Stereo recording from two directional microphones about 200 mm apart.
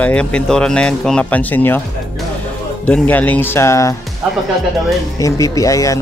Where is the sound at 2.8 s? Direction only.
5° left (ahead or behind).